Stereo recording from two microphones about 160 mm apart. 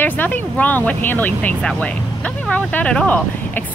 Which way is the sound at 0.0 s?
10° left (ahead or behind).